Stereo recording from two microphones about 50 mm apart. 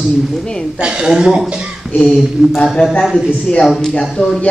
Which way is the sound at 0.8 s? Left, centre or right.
Centre.